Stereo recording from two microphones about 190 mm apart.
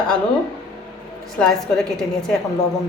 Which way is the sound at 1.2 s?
Centre (ahead or behind).